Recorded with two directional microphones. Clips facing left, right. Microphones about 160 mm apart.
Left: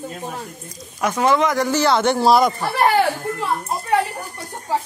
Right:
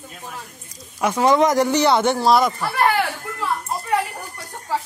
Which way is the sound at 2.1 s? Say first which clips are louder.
Left 2 dB; centre (ahead or behind).